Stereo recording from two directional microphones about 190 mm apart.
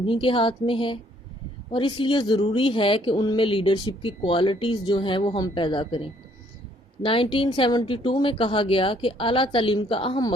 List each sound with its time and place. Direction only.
0.0 s speech: 25° left (ahead or behind)